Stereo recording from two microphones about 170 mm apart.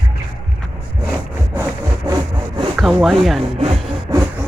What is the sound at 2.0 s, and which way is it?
Sawing, 20° right (ahead or behind).